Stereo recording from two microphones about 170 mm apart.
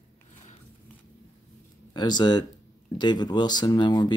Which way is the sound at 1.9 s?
25° left (ahead or behind).